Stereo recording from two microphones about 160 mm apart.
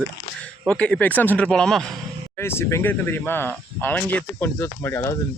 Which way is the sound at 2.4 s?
15° left (ahead or behind).